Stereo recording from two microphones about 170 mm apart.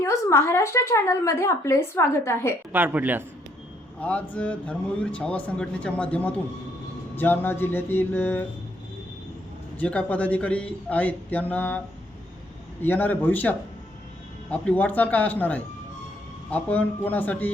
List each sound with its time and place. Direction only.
0.0 s speech: 15° left (ahead or behind)
2.7 s speech: 10° right (ahead or behind)
4.0 s speech: 10° left (ahead or behind)
9.7 s speech: 5° left (ahead or behind)
12.8 s speech: 10° left (ahead or behind)